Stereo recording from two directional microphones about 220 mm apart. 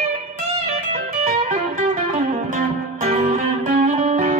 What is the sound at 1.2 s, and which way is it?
Music, 30° right (ahead or behind).